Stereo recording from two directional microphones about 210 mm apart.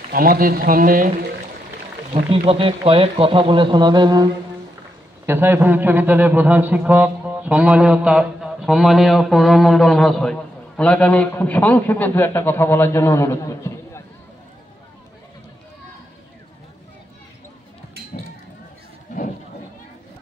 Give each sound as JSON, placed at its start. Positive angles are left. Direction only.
{"t": 0.1, "sound": "speech", "side_deg": -45}
{"t": 2.2, "sound": "a man's voice", "side_deg": -25}